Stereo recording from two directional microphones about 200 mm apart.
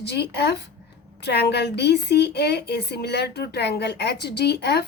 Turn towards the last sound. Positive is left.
turn(degrees=55)  # may be behind; listen again after turning